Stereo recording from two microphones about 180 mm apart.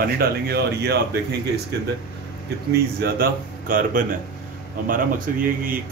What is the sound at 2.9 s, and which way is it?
Speech, 60° right (ahead or behind).